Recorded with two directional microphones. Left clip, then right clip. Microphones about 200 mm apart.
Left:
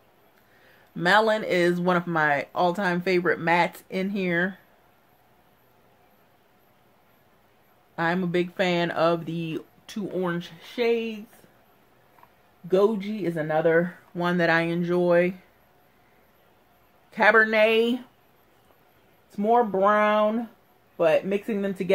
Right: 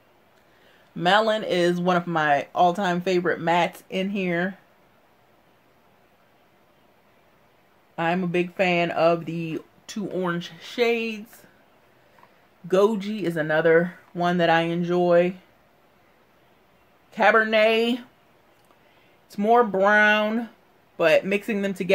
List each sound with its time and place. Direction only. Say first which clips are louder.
0.9 s speech: even; 5° left (ahead or behind)
7.9 s speech: right 1 dB; centre (ahead or behind)
9.3 s speech: right 1 dB; 35° right (ahead or behind)
9.8 s speech: right 1 dB; 5° right (ahead or behind)
12.6 s speech: right 2 dB; 10° right (ahead or behind)
17.1 s speech: even; centre (ahead or behind)
19.3 s speech: right 2 dB; 15° right (ahead or behind)